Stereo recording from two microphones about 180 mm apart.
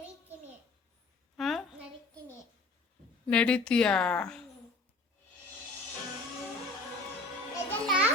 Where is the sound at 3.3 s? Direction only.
5° left (ahead or behind).